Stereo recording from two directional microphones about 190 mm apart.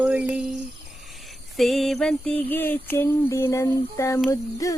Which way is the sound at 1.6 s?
Centre (ahead or behind).